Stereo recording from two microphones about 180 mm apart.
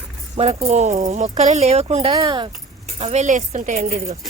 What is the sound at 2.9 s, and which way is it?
Speech, 35° right (ahead or behind).